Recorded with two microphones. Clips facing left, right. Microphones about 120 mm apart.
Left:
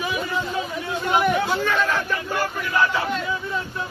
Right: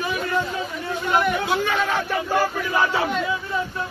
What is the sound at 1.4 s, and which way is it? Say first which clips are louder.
Speech: even; 5° right (ahead or behind).